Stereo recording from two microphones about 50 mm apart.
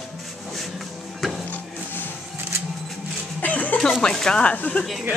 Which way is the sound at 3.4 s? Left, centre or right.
Left.